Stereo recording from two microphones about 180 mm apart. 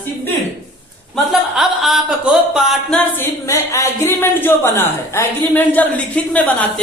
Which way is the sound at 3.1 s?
15° left (ahead or behind).